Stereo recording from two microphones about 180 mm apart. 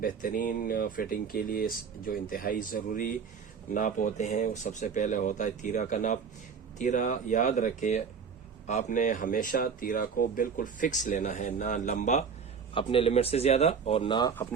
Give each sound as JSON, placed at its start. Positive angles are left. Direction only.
{"t": 0.0, "sound": "speech", "side_deg": 50}
{"t": 12.7, "sound": "speech", "side_deg": 30}